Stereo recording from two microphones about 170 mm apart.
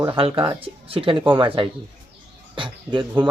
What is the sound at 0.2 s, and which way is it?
Speech, 30° right (ahead or behind).